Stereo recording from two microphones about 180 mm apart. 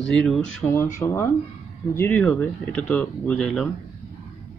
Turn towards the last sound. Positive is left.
turn(degrees=5)  # may be behind; listen again after turning